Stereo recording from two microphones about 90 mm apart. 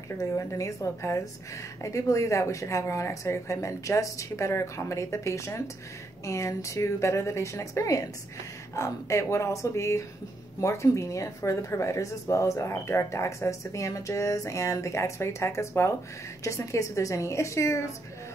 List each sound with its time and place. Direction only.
0.2 s speech: 35° left (ahead or behind)